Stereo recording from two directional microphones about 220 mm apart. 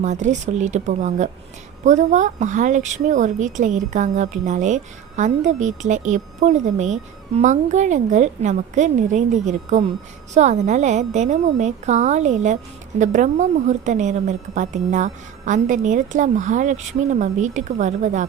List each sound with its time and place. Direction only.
0.0 s speech: 35° right (ahead or behind)